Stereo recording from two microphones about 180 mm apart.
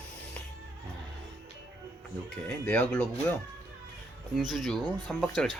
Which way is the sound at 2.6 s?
10° left (ahead or behind).